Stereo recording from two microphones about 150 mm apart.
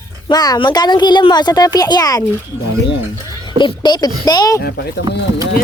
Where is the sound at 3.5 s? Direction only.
30° left (ahead or behind).